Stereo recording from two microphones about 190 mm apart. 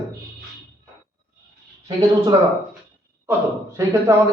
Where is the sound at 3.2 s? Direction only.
15° right (ahead or behind).